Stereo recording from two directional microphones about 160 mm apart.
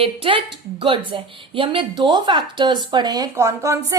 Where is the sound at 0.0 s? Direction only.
35° right (ahead or behind).